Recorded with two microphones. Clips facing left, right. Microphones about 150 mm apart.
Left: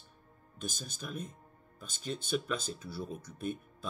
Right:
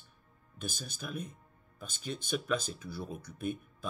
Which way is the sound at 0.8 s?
10° right (ahead or behind).